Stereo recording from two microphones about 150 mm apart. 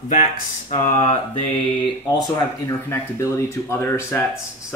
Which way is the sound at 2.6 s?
20° left (ahead or behind).